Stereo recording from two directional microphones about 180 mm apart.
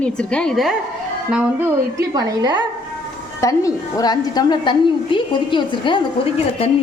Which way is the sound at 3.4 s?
20° left (ahead or behind).